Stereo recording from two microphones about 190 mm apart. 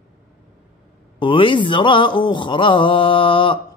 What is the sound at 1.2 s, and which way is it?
Mantra, 25° left (ahead or behind).